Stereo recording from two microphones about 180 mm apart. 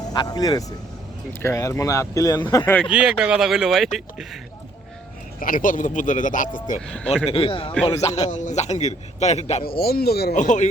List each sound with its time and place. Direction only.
0.1 s speech: 20° left (ahead or behind)
2.9 s speech: 5° right (ahead or behind)
5.4 s speech: 50° left (ahead or behind)
6.8 s speech: 5° left (ahead or behind)
7.3 s a man's voice: 30° left (ahead or behind)
9.6 s speech: 55° left (ahead or behind)
10.3 s speech: 40° left (ahead or behind)